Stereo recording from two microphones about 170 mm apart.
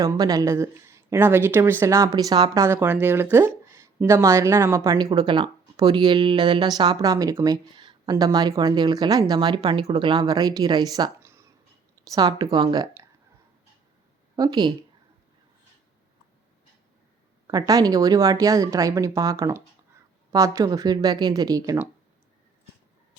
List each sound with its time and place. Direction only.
0.0 s speech: 20° right (ahead or behind)
14.3 s speech: 25° right (ahead or behind)
17.4 s speech: 20° right (ahead or behind)